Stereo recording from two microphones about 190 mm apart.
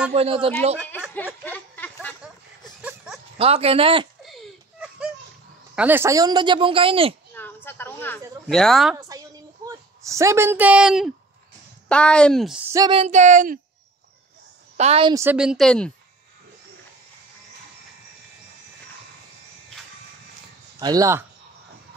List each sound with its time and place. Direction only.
0.1 s speech: 30° right (ahead or behind)
1.1 s a sound: 10° left (ahead or behind)
2.8 s dog: 5° right (ahead or behind)
3.3 s speech: 30° right (ahead or behind)
4.3 s a sound: 5° right (ahead or behind)
5.8 s speech: 10° right (ahead or behind); by 7.2 s 30° right (ahead or behind)
7.3 s speech: 10° left (ahead or behind)
9.7 s speech: 15° right (ahead or behind)
12.7 s speech: 20° right (ahead or behind)
13.0 s speech: 40° right (ahead or behind)
14.8 s speech: 30° right (ahead or behind)
15.1 s speech: 5° right (ahead or behind)
20.8 s speech: 20° right (ahead or behind)